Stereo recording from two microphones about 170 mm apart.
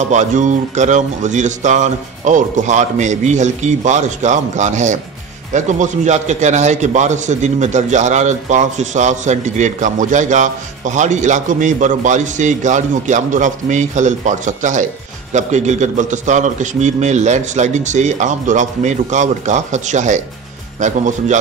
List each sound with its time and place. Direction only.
0.1 s a man's voice: 45° right (ahead or behind)